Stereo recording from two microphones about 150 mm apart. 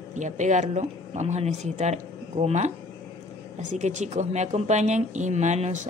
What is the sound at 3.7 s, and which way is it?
A woman's voice, 50° right (ahead or behind).